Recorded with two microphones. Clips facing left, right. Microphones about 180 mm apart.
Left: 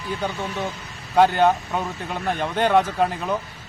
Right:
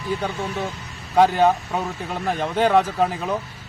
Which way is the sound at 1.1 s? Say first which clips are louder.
Right 1 dB; 5° right (ahead or behind).